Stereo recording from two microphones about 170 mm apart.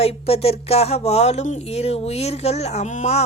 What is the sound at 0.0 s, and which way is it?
A woman's voice, 35° left (ahead or behind).